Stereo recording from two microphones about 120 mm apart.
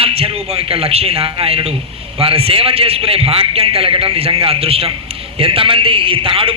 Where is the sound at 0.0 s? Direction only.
55° right (ahead or behind).